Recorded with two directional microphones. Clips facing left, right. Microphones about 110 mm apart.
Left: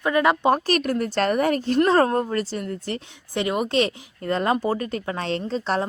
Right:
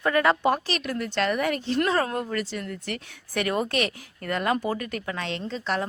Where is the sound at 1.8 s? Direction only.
35° left (ahead or behind).